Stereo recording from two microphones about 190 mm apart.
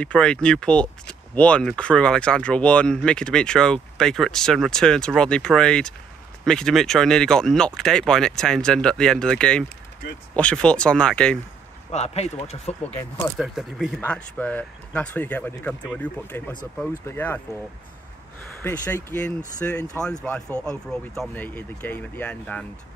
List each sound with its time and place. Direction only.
0.0 s speech: 5° left (ahead or behind)
11.9 s speech: 35° left (ahead or behind)
13.4 s speech: centre (ahead or behind)
18.6 s speech: 10° left (ahead or behind)